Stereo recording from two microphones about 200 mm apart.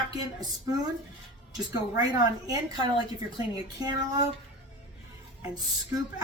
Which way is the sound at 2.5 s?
20° right (ahead or behind).